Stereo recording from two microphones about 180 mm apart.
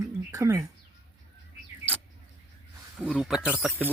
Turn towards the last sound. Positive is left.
turn(degrees=-5)  # may be behind; listen again after turning